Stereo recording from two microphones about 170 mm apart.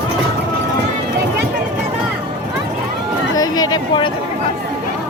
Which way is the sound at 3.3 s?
20° left (ahead or behind).